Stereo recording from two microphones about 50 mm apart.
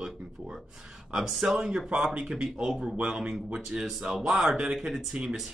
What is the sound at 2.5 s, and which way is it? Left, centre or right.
Speech, centre.